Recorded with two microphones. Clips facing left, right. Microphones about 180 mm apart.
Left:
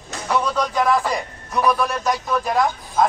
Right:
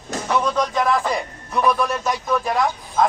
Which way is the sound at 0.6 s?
Centre (ahead or behind).